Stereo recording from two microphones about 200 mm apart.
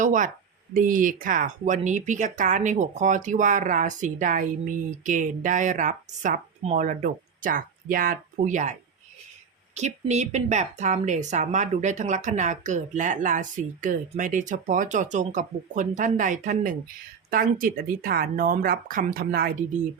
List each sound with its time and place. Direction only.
0.0 s speech: 40° right (ahead or behind)
9.7 s speech: 35° right (ahead or behind)